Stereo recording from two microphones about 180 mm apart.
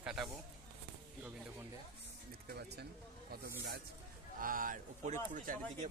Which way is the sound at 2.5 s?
65° right (ahead or behind).